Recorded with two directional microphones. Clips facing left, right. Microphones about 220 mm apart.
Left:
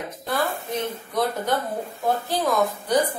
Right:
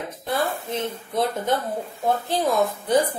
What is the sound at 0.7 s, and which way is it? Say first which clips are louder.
A woman's voice: even; 25° right (ahead or behind).